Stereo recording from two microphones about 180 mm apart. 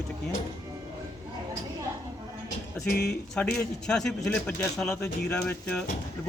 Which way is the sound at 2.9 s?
60° left (ahead or behind).